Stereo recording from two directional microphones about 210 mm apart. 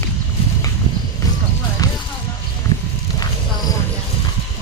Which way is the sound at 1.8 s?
15° left (ahead or behind).